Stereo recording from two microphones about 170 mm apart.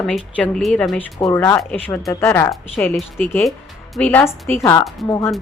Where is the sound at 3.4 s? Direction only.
Centre (ahead or behind).